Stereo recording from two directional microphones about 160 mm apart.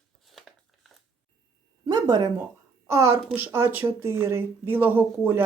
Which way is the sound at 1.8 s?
25° right (ahead or behind).